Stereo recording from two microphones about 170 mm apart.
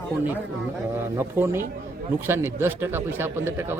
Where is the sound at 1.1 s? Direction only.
15° right (ahead or behind).